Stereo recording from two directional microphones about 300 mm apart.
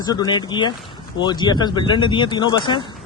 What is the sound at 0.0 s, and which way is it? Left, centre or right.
Speech, centre.